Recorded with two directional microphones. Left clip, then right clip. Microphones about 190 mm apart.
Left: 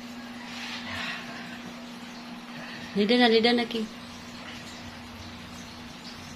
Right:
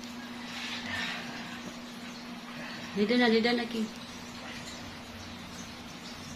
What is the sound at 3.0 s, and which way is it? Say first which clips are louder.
Speech: left 5 dB; 25° left (ahead or behind).